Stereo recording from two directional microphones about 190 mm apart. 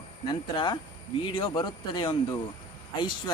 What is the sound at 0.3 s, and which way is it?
Speech, 25° left (ahead or behind).